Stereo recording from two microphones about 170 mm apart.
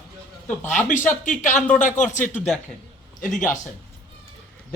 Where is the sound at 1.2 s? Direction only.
50° left (ahead or behind).